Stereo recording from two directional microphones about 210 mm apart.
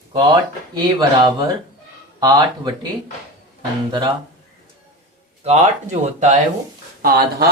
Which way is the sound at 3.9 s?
20° right (ahead or behind).